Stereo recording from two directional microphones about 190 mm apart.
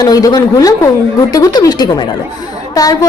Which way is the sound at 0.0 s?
20° left (ahead or behind).